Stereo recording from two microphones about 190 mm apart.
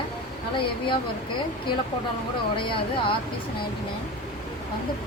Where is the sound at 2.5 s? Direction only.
25° left (ahead or behind).